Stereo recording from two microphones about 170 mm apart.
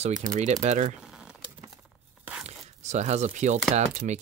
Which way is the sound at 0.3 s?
45° right (ahead or behind).